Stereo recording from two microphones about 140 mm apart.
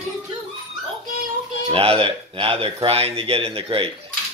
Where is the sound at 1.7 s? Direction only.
45° right (ahead or behind).